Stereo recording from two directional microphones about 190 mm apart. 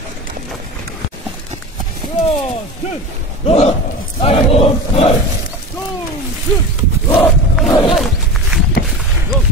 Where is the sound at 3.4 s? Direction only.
35° left (ahead or behind).